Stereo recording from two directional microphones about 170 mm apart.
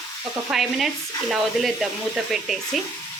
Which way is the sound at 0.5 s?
Centre (ahead or behind).